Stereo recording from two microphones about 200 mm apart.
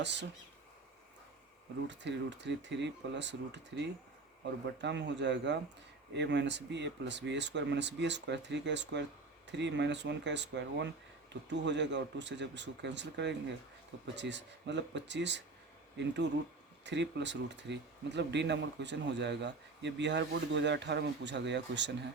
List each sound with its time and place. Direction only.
0.0 s speech: 60° right (ahead or behind)
1.9 s speech: 60° right (ahead or behind)
4.6 s speech: 60° right (ahead or behind)